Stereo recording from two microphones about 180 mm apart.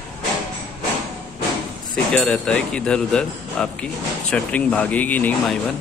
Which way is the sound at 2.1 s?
5° left (ahead or behind).